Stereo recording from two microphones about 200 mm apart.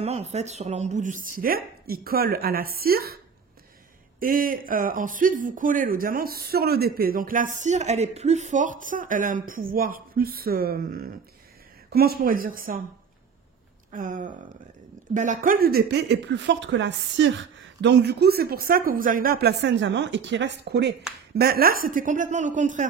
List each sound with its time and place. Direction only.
0.0 s speech: 30° right (ahead or behind); by 3.2 s 50° right (ahead or behind)
4.2 s speech: 45° right (ahead or behind)
13.9 s speech: 40° right (ahead or behind)